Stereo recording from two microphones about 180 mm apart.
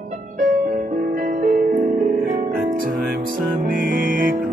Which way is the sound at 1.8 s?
40° right (ahead or behind).